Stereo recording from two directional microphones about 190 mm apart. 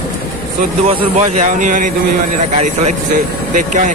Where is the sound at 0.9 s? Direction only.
35° right (ahead or behind).